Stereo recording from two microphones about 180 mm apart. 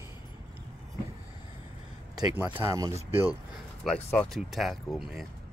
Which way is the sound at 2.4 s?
10° right (ahead or behind).